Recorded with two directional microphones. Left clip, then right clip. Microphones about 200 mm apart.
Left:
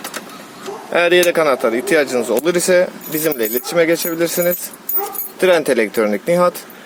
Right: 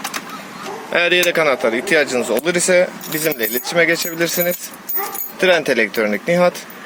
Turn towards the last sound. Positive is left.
turn(degrees=10)  # may be behind; listen again after turning